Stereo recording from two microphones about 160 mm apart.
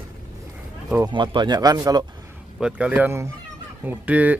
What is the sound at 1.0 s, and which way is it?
Speech, 30° right (ahead or behind).